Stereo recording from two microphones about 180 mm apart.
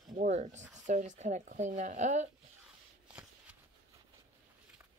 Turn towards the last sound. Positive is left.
turn(degrees=-5)  # may be behind; listen again after turning